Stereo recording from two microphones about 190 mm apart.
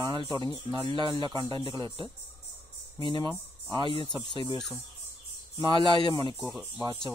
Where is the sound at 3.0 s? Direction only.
25° left (ahead or behind).